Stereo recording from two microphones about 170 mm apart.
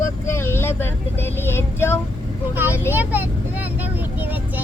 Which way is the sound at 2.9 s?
10° right (ahead or behind).